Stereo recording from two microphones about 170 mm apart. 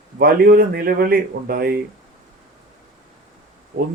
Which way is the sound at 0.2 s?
65° right (ahead or behind).